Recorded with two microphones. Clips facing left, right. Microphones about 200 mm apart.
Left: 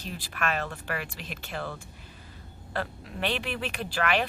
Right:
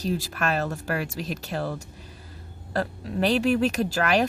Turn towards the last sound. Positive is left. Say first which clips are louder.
# right 5 dB
turn(degrees=-40)  # may be behind; listen again after turning